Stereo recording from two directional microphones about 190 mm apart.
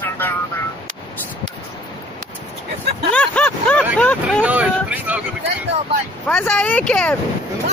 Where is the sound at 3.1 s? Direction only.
5° left (ahead or behind).